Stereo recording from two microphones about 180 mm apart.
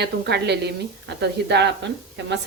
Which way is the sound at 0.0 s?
65° right (ahead or behind).